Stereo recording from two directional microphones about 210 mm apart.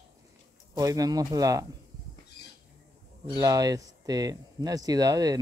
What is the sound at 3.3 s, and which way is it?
Speech, 15° right (ahead or behind).